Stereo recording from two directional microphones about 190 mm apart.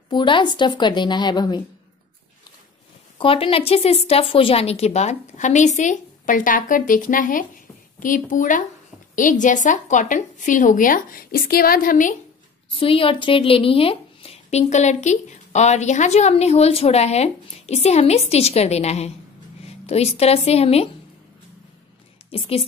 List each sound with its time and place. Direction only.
0.1 s a woman's voice: 25° left (ahead or behind)
3.2 s a woman's voice: 30° left (ahead or behind); by 12.2 s 45° left (ahead or behind)
12.6 s speech: 30° left (ahead or behind)
22.3 s a woman's voice: 30° left (ahead or behind)